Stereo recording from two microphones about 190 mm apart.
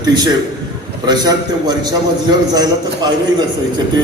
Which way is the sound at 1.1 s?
20° right (ahead or behind).